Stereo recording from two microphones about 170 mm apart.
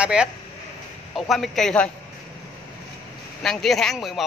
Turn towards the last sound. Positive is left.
turn(degrees=0)  # may be behind; listen again after turning